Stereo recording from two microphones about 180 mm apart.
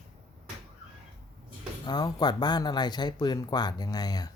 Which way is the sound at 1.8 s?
25° left (ahead or behind).